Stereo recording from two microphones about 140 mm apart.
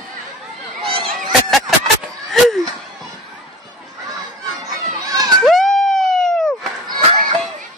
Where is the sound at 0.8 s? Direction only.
40° right (ahead or behind).